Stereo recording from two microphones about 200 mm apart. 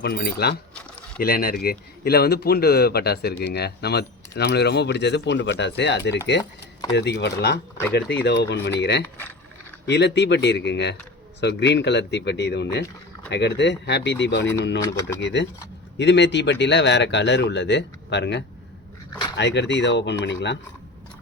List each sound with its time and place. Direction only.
0.0 s speech: 55° left (ahead or behind)
14.8 s speech: 15° left (ahead or behind)
15.2 s speech: 60° left (ahead or behind)